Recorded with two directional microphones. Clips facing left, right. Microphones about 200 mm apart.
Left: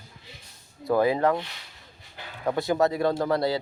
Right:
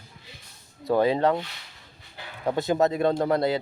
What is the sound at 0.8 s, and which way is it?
Speech, 25° right (ahead or behind).